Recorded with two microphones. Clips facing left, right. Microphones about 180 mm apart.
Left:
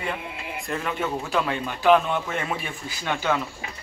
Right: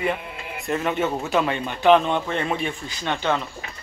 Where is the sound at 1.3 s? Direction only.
Centre (ahead or behind).